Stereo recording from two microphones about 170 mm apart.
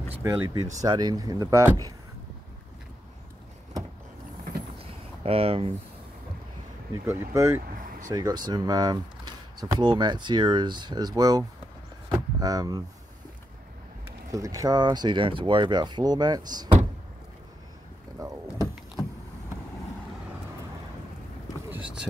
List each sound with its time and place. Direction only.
0.2 s speech: 15° right (ahead or behind)
4.7 s a sound: 35° right (ahead or behind)
7.1 s speech: 15° right (ahead or behind)
12.1 s vehicle: 20° right (ahead or behind)
14.3 s speech: 20° right (ahead or behind)
18.2 s speech: 20° right (ahead or behind)